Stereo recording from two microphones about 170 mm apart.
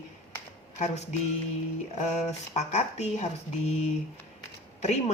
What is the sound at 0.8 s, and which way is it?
Speech, 45° left (ahead or behind).